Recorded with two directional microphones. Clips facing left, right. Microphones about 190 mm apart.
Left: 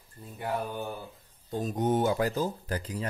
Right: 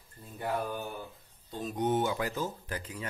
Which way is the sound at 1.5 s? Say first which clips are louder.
Left 3 dB; 45° left (ahead or behind).